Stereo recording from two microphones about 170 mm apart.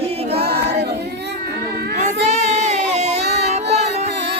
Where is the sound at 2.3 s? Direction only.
40° right (ahead or behind).